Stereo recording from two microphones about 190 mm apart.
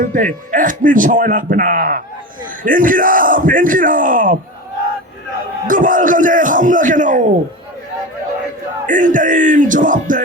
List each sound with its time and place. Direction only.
0.0 s speech: 45° right (ahead or behind)
5.6 s speech: 45° right (ahead or behind)
8.9 s speech: 45° right (ahead or behind)